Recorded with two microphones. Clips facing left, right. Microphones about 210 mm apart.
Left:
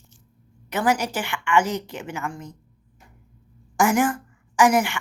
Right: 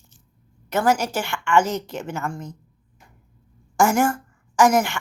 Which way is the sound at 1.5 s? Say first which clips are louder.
Right 2 dB; 15° left (ahead or behind).